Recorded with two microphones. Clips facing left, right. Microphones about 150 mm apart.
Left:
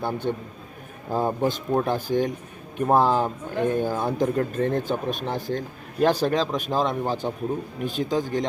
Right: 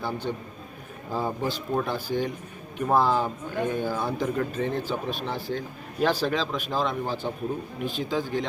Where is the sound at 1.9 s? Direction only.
50° left (ahead or behind).